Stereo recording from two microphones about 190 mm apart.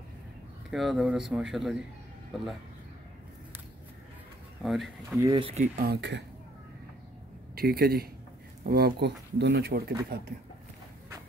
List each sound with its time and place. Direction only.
0.7 s speech: centre (ahead or behind)
4.6 s speech: centre (ahead or behind)
5.1 s speech: 20° right (ahead or behind)
5.5 s speech: 40° right (ahead or behind)
5.9 s speech: 65° right (ahead or behind)
7.5 s a man's voice: 55° right (ahead or behind)